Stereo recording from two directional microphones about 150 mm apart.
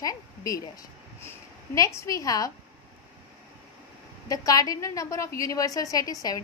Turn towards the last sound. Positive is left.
turn(degrees=25)  # may be behind; listen again after turning